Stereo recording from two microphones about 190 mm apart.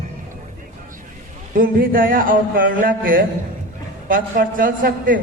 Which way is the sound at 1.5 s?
50° right (ahead or behind).